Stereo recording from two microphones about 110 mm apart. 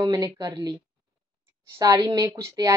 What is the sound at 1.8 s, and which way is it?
Speech, 30° right (ahead or behind).